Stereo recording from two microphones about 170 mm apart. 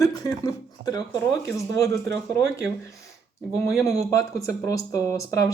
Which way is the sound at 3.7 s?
20° left (ahead or behind).